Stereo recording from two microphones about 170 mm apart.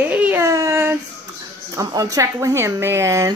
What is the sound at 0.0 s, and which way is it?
Baby cry, 10° right (ahead or behind).